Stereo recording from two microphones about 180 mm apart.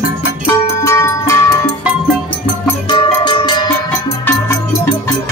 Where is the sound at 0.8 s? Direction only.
15° left (ahead or behind).